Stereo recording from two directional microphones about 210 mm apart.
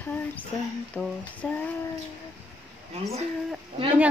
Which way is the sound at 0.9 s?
5° left (ahead or behind).